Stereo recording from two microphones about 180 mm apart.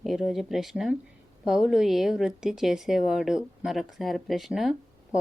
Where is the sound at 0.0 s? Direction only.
Centre (ahead or behind).